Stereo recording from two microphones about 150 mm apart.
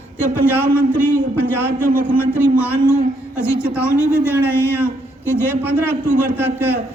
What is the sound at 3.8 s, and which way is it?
Speech, 15° left (ahead or behind).